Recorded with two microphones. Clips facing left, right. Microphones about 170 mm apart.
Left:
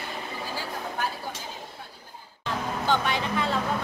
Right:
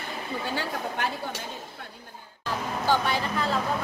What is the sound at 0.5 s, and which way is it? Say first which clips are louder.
Speech: right 1 dB; 70° right (ahead or behind).